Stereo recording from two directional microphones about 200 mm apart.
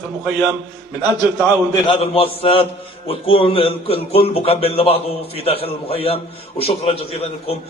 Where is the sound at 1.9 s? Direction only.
30° left (ahead or behind).